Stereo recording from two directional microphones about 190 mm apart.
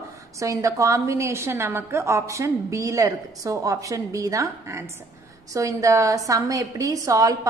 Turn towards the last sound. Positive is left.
turn(degrees=-20)  # may be behind; listen again after turning